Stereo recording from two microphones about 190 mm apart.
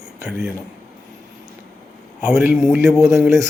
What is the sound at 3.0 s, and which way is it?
Speech, 15° right (ahead or behind).